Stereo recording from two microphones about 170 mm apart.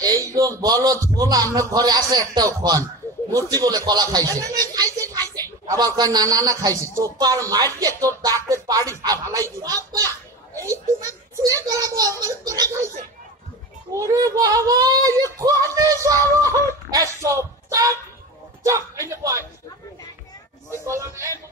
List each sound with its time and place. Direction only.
0.0 s a man's voice: 20° right (ahead or behind)
13.9 s a man's voice: 20° right (ahead or behind)
20.8 s speech: 15° right (ahead or behind)